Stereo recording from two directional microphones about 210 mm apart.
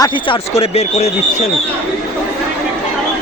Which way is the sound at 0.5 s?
30° left (ahead or behind).